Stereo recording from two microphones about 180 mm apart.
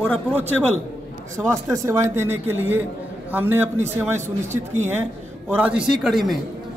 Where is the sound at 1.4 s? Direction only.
15° right (ahead or behind).